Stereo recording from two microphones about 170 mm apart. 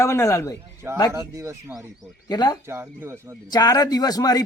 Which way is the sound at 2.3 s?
25° left (ahead or behind).